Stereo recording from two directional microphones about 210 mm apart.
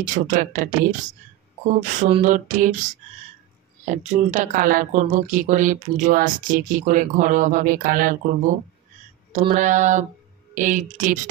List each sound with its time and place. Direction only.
0.0 s speech: 40° right (ahead or behind)
1.8 s speech: 35° right (ahead or behind)
3.8 s speech: 35° right (ahead or behind)